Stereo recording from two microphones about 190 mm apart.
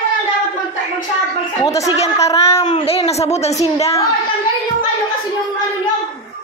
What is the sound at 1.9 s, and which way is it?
A woman's voice, 35° left (ahead or behind).